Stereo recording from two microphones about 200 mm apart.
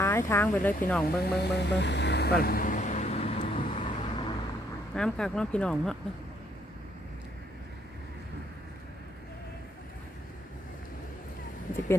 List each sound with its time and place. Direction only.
0.0 s speech: 15° left (ahead or behind)
1.2 s vehicle: 55° left (ahead or behind); by 4.4 s 25° left (ahead or behind)
4.9 s speech: 5° left (ahead or behind)